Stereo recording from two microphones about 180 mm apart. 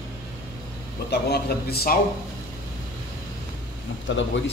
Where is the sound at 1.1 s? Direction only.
60° left (ahead or behind).